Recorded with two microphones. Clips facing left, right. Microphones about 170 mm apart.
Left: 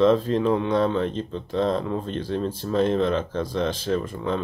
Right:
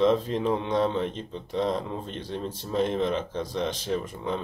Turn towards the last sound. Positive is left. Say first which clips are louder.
# left 4 dB
turn(degrees=-15)  # may be behind; listen again after turning